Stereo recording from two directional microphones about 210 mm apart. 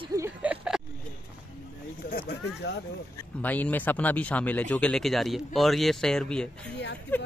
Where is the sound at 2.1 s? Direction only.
45° left (ahead or behind).